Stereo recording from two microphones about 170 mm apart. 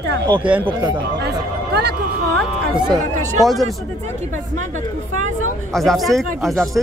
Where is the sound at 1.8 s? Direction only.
70° right (ahead or behind).